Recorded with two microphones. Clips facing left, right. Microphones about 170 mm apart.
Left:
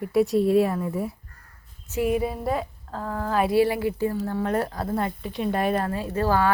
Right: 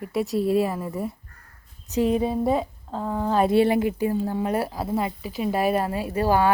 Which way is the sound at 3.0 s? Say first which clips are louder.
Right 3 dB; 15° right (ahead or behind).